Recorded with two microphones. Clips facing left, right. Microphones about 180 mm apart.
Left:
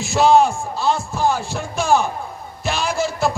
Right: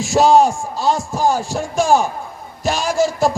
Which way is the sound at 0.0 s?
45° right (ahead or behind).